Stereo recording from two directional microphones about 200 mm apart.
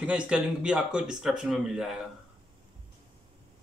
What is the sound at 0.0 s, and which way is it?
Speech, 5° right (ahead or behind).